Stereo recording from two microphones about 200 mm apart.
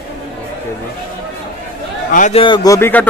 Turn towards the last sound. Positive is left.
turn(degrees=10)  # may be behind; listen again after turning